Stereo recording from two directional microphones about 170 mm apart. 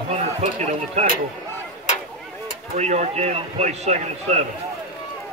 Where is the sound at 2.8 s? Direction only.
40° right (ahead or behind).